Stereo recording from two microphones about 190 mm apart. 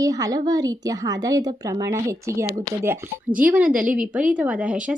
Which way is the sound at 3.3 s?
45° right (ahead or behind).